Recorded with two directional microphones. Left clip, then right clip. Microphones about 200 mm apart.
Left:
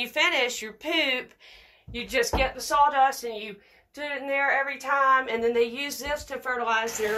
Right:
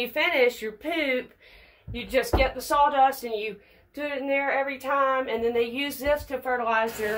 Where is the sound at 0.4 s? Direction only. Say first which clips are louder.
Right 4 dB; 10° right (ahead or behind).